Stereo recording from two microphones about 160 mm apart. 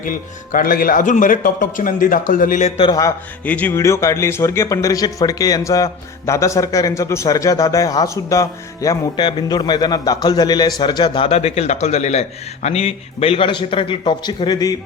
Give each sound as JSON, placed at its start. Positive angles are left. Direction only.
{"t": 0.0, "sound": "a man's voice", "side_deg": 55}
{"t": 2.8, "sound": "speech", "side_deg": 25}
{"t": 3.4, "sound": "speech", "side_deg": 10}
{"t": 11.3, "sound": "a man's voice", "side_deg": 40}